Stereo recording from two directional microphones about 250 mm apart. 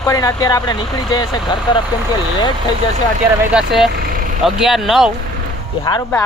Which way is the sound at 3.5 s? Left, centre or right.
Centre.